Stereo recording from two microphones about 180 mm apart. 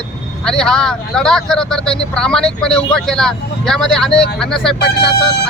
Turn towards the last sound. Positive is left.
turn(degrees=70)  # may be behind; listen again after turning